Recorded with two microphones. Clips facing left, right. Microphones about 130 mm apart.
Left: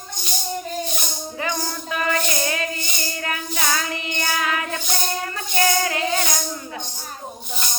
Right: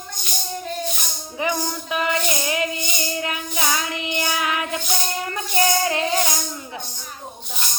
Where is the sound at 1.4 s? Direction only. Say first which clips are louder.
Right 3 dB; 20° right (ahead or behind).